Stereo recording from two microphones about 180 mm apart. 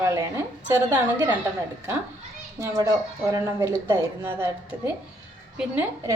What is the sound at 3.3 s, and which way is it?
A woman's voice, 15° right (ahead or behind).